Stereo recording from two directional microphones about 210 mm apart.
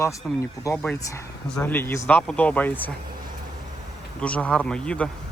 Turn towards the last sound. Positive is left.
turn(degrees=5)  # may be behind; listen again after turning